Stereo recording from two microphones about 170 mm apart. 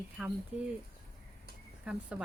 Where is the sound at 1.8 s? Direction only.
5° right (ahead or behind).